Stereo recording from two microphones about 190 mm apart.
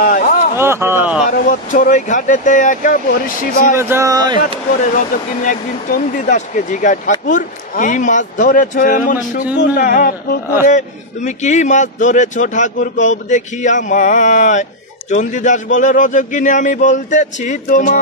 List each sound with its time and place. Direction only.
0.0 s a sound: 45° left (ahead or behind)
0.6 s speech: 15° right (ahead or behind)
1.3 s speech: 45° left (ahead or behind)
3.7 s speech: 15° right (ahead or behind)
4.9 s speech: 45° left (ahead or behind)
10.7 s speech: 40° left (ahead or behind)